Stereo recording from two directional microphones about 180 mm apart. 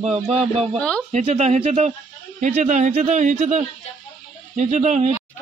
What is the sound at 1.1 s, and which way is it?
A man's voice, 40° right (ahead or behind).